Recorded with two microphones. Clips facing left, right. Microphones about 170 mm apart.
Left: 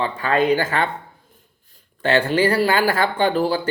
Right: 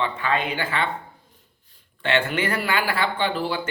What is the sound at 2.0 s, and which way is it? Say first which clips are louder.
Speech: left 6 dB; 35° left (ahead or behind).